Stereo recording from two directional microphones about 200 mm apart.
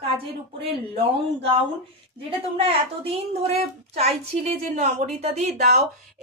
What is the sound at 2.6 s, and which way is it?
Speech, 30° right (ahead or behind).